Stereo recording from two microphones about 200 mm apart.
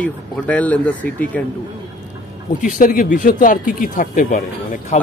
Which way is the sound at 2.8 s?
45° left (ahead or behind).